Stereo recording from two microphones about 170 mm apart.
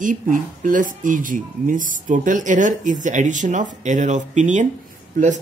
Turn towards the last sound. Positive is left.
turn(degrees=-50)  # may be behind; listen again after turning